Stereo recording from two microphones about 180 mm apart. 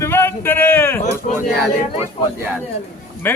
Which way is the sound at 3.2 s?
10° left (ahead or behind).